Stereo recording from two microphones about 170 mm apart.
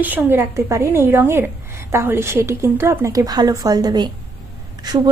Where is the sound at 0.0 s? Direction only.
10° right (ahead or behind).